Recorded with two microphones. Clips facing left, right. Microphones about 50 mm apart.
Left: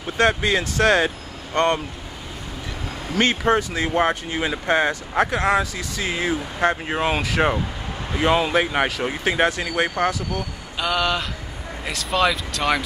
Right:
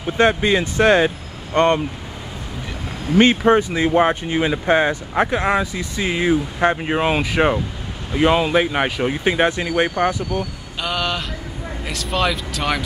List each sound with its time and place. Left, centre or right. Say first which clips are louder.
0.0 s speech: right 3 dB; centre
3.2 s speech: right 5 dB; right
10.3 s speech: right 4 dB; right
10.8 s speech: left 1 dB; centre